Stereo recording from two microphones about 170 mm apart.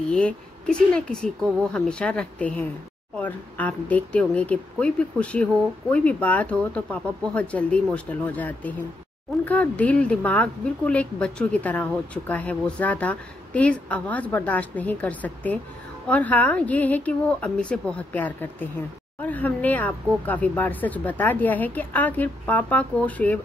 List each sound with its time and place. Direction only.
0.1 s speech: 5° left (ahead or behind)